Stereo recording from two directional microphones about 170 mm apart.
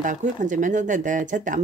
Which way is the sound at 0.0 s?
50° right (ahead or behind).